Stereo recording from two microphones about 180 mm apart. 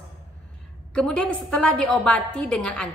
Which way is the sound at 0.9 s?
5° left (ahead or behind).